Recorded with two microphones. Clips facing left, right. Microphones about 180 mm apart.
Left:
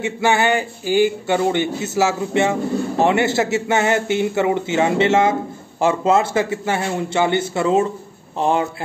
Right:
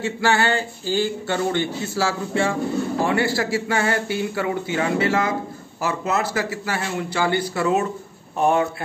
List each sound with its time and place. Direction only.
0.0 s speech: 20° left (ahead or behind)